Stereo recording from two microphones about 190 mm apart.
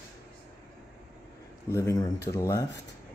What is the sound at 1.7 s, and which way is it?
Speech, 15° left (ahead or behind).